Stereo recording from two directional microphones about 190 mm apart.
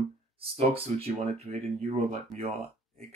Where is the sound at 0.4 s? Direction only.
30° right (ahead or behind).